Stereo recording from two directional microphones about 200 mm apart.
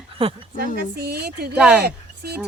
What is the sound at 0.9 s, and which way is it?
Speech, 55° right (ahead or behind).